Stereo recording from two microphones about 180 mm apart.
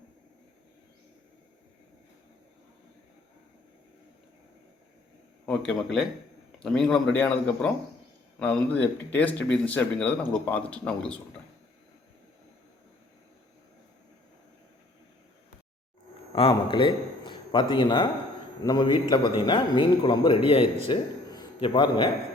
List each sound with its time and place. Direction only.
5.5 s speech: 5° left (ahead or behind)
16.3 s a man's voice: 30° left (ahead or behind)